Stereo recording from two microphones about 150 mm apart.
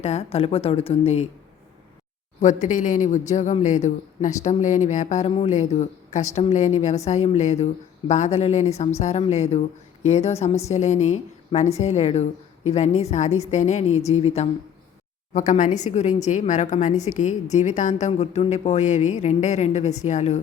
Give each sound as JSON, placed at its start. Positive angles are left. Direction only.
{"t": 0.0, "sound": "speech", "side_deg": 45}
{"t": 2.4, "sound": "a woman's voice", "side_deg": 55}
{"t": 15.3, "sound": "a woman's voice", "side_deg": 55}